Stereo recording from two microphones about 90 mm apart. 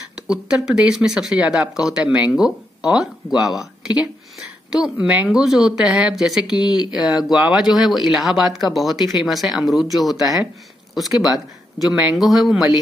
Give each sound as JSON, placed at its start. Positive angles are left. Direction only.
{"t": 0.3, "sound": "speech", "side_deg": -10}
{"t": 4.9, "sound": "speech", "side_deg": -15}